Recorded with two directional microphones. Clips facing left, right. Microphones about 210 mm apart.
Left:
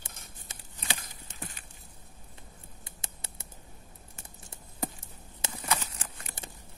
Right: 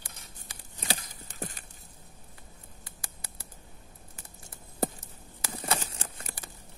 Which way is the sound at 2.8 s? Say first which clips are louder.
Left 2 dB; 25° left (ahead or behind).